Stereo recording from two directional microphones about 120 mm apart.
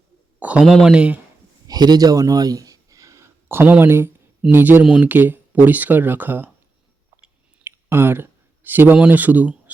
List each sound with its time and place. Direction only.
0.3 s a sound: 10° right (ahead or behind)
0.6 s speech: centre (ahead or behind)
1.6 s speech: 35° right (ahead or behind); by 6.5 s 15° right (ahead or behind)
7.6 s speech: 20° right (ahead or behind)